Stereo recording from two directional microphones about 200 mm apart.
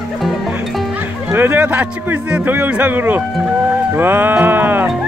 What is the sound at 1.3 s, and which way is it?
A man's voice, 10° right (ahead or behind).